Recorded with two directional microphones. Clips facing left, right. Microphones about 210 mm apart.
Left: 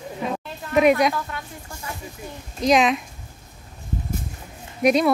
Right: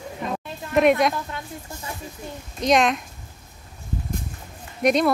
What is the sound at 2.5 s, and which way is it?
Speech, centre (ahead or behind).